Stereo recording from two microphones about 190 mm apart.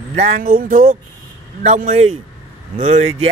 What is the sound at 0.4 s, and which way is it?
Speech, 45° right (ahead or behind).